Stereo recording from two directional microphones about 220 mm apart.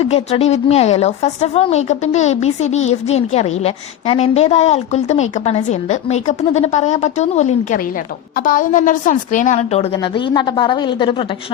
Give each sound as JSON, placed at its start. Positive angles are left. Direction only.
{"t": 0.0, "sound": "speech", "side_deg": 30}